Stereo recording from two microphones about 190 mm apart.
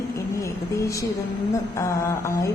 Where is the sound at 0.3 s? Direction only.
15° left (ahead or behind).